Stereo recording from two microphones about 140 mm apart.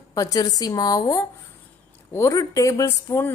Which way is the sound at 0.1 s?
25° left (ahead or behind).